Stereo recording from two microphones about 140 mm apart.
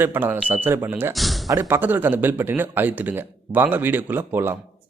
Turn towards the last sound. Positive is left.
turn(degrees=-15)  # may be behind; listen again after turning